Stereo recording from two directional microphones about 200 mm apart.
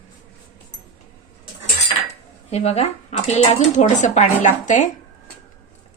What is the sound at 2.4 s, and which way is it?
Speech, 30° left (ahead or behind).